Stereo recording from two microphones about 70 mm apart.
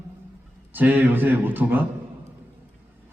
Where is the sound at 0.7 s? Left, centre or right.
Right.